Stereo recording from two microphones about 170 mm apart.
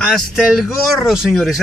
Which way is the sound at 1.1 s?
5° right (ahead or behind).